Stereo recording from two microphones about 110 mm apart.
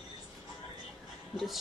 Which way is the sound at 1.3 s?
Centre (ahead or behind).